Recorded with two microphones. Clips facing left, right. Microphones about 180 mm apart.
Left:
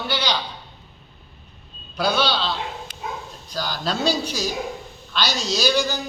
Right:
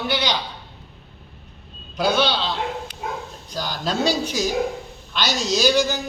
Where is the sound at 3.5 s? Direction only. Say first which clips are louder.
Even; 15° right (ahead or behind).